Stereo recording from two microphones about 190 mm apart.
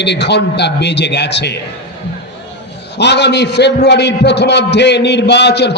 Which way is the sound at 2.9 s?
65° left (ahead or behind).